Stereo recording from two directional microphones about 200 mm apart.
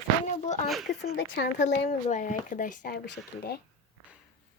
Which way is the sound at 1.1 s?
55° left (ahead or behind).